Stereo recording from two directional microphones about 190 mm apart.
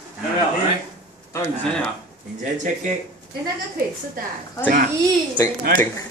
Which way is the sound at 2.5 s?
40° right (ahead or behind).